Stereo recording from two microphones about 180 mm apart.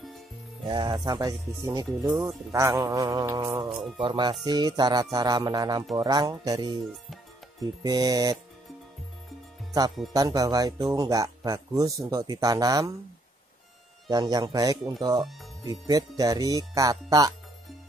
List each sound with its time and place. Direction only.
0.7 s speech: 25° right (ahead or behind)
3.6 s speech: centre (ahead or behind)
4.0 s speech: 25° right (ahead or behind)
7.8 s speech: 20° right (ahead or behind)
10.1 s speech: 20° right (ahead or behind)
14.1 s speech: 20° right (ahead or behind)